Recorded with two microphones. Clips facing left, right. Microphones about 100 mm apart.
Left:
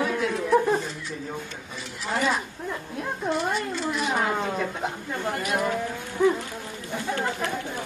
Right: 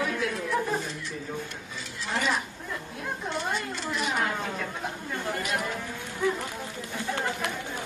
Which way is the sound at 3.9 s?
20° left (ahead or behind).